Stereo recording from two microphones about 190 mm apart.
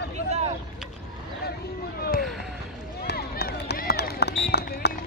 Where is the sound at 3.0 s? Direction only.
55° left (ahead or behind).